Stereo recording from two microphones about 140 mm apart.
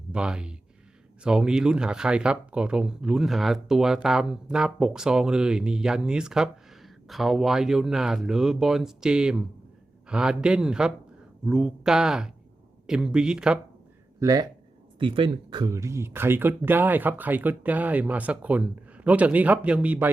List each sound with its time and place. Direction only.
0.1 s speech: 5° right (ahead or behind)
14.2 s speech: 25° right (ahead or behind)
14.9 s speech: 35° right (ahead or behind); by 20.1 s 10° right (ahead or behind)